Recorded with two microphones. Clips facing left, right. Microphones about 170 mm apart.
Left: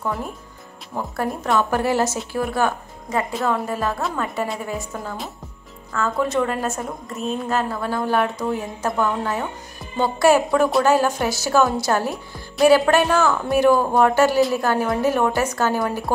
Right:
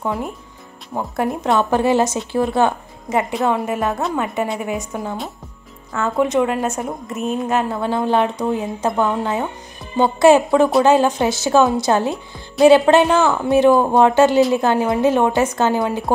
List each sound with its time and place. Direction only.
0.0 s a woman's voice: 20° right (ahead or behind)